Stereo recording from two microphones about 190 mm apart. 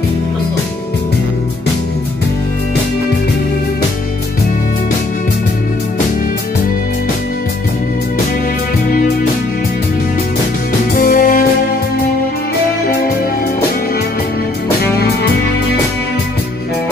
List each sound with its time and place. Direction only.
11.0 s music: 50° left (ahead or behind)